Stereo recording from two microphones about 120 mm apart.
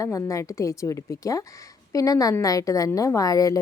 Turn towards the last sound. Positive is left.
turn(degrees=30)  # may be behind; listen again after turning